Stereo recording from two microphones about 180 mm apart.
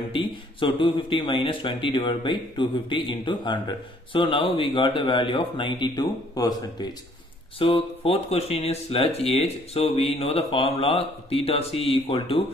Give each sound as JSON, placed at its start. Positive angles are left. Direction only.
{"t": 0.1, "sound": "a man's voice", "side_deg": 30}